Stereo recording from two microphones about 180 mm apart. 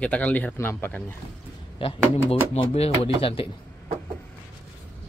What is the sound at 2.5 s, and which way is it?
Speech, 35° left (ahead or behind).